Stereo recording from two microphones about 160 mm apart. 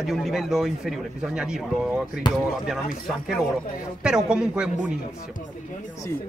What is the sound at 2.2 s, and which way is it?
Speech, 30° left (ahead or behind).